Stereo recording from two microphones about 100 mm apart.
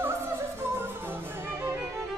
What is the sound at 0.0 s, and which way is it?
Music, 25° right (ahead or behind).